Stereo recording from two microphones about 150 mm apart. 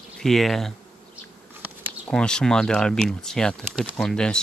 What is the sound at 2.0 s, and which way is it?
Speech, 5° left (ahead or behind).